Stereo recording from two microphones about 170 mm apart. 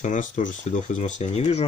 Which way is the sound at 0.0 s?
45° left (ahead or behind).